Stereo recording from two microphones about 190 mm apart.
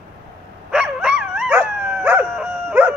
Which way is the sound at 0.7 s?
5° right (ahead or behind).